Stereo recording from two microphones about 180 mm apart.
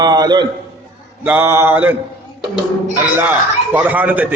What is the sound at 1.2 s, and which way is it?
Speech, 10° right (ahead or behind).